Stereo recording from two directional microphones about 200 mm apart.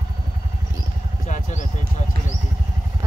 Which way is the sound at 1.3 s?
40° left (ahead or behind).